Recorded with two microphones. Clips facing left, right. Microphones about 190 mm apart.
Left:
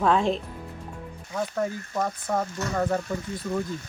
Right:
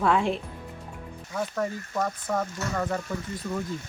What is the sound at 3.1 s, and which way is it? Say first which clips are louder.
Speech: left 2 dB; 15° left (ahead or behind).